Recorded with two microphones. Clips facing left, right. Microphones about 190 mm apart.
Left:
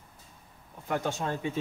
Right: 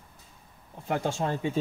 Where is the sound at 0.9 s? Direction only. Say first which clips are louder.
Right 2 dB; 25° right (ahead or behind).